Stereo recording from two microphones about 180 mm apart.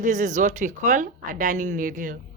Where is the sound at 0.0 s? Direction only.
45° right (ahead or behind).